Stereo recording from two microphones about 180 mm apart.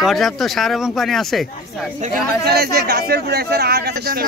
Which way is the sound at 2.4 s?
60° right (ahead or behind).